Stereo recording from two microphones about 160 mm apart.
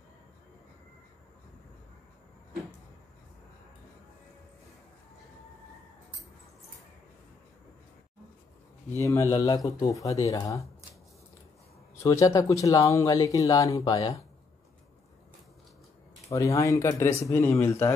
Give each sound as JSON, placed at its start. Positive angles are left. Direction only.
{"t": 8.9, "sound": "speech", "side_deg": 20}
{"t": 11.9, "sound": "speech", "side_deg": 20}
{"t": 16.3, "sound": "speech", "side_deg": 20}